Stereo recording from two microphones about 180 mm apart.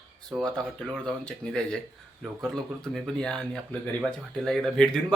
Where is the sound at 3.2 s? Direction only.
5° left (ahead or behind).